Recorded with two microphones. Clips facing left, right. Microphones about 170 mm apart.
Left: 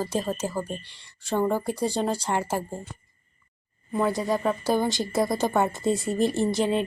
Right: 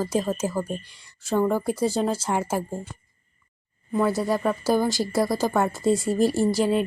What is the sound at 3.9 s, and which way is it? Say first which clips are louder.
A woman's voice: right 2 dB; 5° right (ahead or behind).